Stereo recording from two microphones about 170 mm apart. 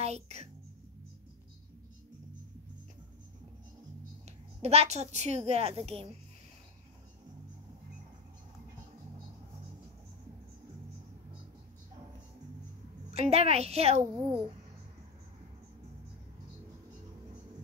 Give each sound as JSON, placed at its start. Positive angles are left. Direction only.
{"t": 0.0, "sound": "speech", "side_deg": -40}
{"t": 4.6, "sound": "a woman's voice", "side_deg": -40}
{"t": 13.1, "sound": "a woman's voice", "side_deg": -40}
{"t": 14.1, "sound": "a child's voice", "side_deg": -15}